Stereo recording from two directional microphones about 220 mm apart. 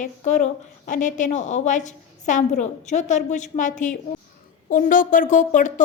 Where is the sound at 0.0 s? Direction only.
35° left (ahead or behind).